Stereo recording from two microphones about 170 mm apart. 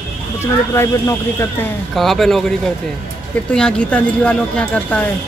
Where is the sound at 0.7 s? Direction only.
15° left (ahead or behind).